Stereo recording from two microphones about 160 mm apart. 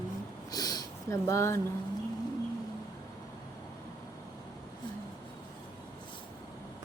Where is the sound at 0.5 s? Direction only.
25° left (ahead or behind).